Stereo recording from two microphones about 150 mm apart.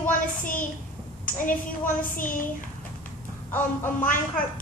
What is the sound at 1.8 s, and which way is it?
Speech, 60° left (ahead or behind).